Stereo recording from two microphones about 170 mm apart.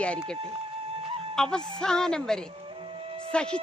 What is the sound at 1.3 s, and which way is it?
Music, 5° left (ahead or behind).